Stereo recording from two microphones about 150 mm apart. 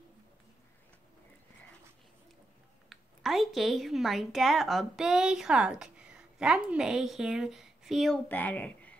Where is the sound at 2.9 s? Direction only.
Centre (ahead or behind).